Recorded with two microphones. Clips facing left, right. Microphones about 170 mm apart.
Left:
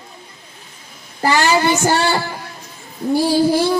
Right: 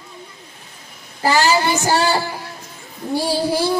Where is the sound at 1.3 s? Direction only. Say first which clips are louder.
Left 1 dB; 35° right (ahead or behind).